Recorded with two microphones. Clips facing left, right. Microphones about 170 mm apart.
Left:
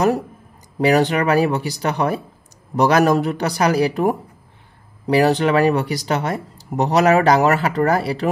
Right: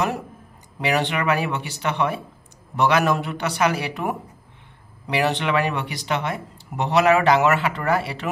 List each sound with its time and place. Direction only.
0.7 s speech: 40° left (ahead or behind)